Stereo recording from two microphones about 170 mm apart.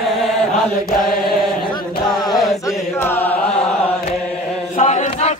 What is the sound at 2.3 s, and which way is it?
Chant, centre (ahead or behind).